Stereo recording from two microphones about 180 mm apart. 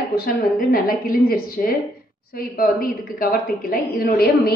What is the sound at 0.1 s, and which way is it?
A woman's voice, 55° left (ahead or behind).